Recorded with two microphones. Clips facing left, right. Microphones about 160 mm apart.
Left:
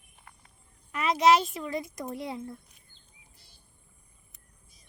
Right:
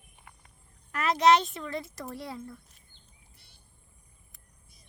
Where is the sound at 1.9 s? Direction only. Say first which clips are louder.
Left 3 dB; 20° left (ahead or behind).